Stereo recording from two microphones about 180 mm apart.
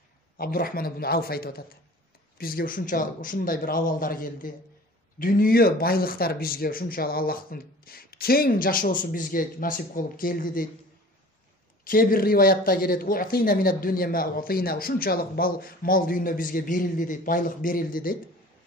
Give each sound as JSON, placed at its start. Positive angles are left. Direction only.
{"t": 0.4, "sound": "speech", "side_deg": 55}
{"t": 11.8, "sound": "speech", "side_deg": 50}